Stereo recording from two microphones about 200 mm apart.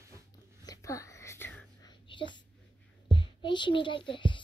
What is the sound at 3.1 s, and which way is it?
A child's voice, 25° left (ahead or behind).